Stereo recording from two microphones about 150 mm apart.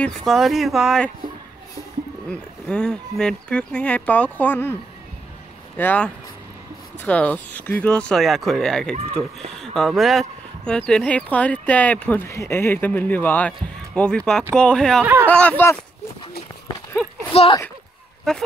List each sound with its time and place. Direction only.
0.0 s speech: centre (ahead or behind)
2.2 s speech: 5° left (ahead or behind)
5.8 s speech: 10° left (ahead or behind)
8.9 s speech: 40° right (ahead or behind)
9.5 s speech: centre (ahead or behind)
17.3 s speech: 40° left (ahead or behind)
18.3 s speech: 5° left (ahead or behind)